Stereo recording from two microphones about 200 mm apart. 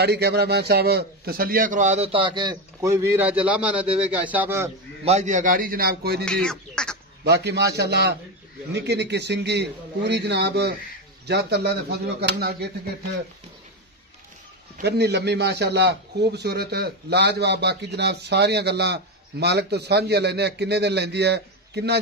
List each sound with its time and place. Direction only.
0.0 s a man's voice: 55° right (ahead or behind); by 4.6 s 10° right (ahead or behind)
5.0 s a man's voice: 35° right (ahead or behind); by 6.2 s 50° right (ahead or behind)
6.2 s speech: 5° left (ahead or behind)
7.2 s a man's voice: 55° right (ahead or behind)
14.8 s a man's voice: 55° right (ahead or behind)